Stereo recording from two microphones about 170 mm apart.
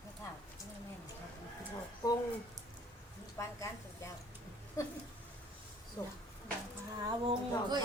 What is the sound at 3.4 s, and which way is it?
Speech, 20° left (ahead or behind).